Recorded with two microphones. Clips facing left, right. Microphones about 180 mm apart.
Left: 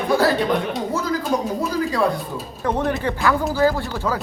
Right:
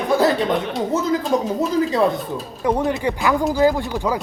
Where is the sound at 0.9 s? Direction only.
25° right (ahead or behind).